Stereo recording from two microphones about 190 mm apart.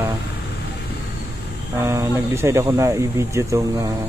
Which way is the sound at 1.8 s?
15° right (ahead or behind).